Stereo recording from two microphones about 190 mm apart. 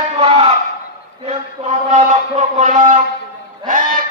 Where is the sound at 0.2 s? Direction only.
30° right (ahead or behind).